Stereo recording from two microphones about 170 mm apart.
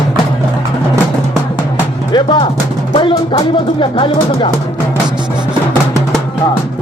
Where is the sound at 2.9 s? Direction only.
30° left (ahead or behind).